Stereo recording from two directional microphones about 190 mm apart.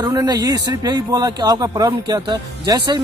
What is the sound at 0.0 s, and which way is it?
Speech, 20° right (ahead or behind).